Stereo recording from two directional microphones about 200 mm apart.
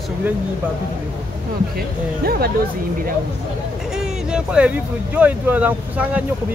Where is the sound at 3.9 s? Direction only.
5° right (ahead or behind).